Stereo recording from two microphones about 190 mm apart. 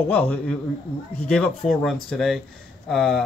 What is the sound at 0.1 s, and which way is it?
A man's voice, 10° left (ahead or behind).